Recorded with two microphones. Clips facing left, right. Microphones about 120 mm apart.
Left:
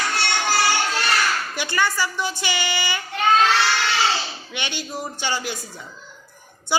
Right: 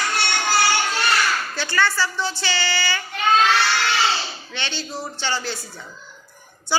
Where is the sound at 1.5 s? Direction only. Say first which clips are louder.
Right 1 dB; 15° left (ahead or behind).